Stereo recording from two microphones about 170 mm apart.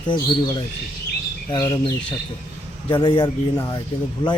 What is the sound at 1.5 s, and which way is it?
Speech, 20° left (ahead or behind).